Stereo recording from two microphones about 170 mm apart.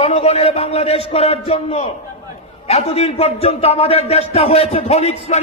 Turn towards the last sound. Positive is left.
turn(degrees=40)  # may be behind; listen again after turning